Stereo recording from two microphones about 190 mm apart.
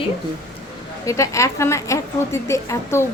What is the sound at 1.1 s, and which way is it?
Speech, 15° left (ahead or behind).